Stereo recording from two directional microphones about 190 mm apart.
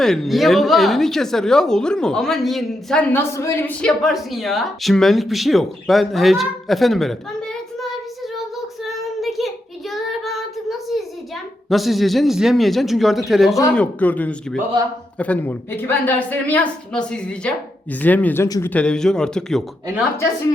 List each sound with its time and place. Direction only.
0.0 s a woman's voice: centre (ahead or behind)
8.8 s child singing: centre (ahead or behind)
11.7 s a woman's voice: centre (ahead or behind); by 18.7 s 20° left (ahead or behind)
18.7 s a woman's voice: 5° left (ahead or behind)